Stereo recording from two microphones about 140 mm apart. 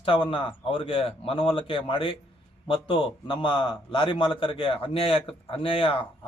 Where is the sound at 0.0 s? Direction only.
35° left (ahead or behind).